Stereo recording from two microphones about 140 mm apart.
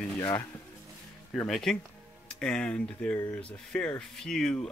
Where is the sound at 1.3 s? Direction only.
5° left (ahead or behind).